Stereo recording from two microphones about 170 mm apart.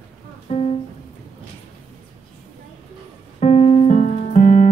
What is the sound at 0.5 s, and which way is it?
Music, 40° left (ahead or behind).